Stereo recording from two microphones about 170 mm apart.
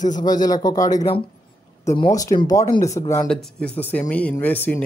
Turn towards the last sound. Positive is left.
turn(degrees=10)  # may be behind; listen again after turning